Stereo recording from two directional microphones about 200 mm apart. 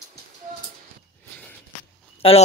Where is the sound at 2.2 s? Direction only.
30° left (ahead or behind).